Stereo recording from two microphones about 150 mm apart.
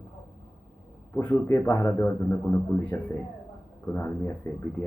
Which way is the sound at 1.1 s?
10° left (ahead or behind).